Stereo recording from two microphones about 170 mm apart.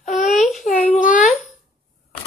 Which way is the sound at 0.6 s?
45° left (ahead or behind).